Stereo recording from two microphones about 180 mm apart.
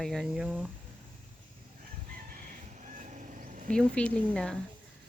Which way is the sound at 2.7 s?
45° right (ahead or behind).